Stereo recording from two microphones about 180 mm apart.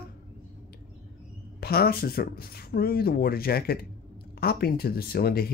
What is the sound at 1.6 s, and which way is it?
Speech, 60° left (ahead or behind).